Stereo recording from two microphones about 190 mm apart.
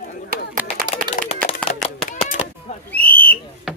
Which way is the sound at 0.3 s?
50° right (ahead or behind).